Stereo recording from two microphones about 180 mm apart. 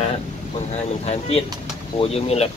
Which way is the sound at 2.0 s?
35° left (ahead or behind).